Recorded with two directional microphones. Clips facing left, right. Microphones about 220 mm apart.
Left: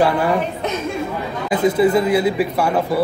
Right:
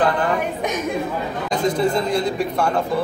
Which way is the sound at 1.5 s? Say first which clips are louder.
Left 5 dB; 5° left (ahead or behind).